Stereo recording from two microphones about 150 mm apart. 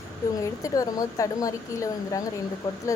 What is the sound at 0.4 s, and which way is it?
Speech, 20° left (ahead or behind).